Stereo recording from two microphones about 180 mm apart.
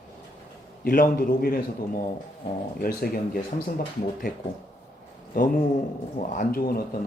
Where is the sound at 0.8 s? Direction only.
55° left (ahead or behind).